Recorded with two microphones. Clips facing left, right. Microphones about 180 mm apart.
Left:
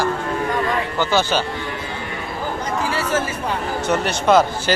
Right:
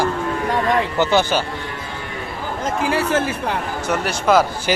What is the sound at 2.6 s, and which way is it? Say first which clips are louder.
Speech: right 6 dB; 60° right (ahead or behind).